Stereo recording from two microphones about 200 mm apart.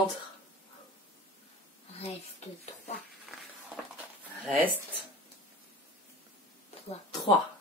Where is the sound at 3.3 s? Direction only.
Centre (ahead or behind).